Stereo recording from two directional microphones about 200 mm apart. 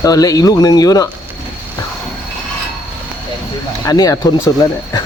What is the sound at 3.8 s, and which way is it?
Speech, 20° left (ahead or behind).